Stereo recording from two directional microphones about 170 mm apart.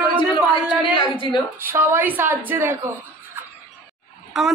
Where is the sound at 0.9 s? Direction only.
30° left (ahead or behind).